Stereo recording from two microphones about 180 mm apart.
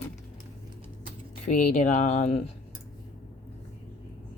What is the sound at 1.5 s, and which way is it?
Speech, 45° left (ahead or behind).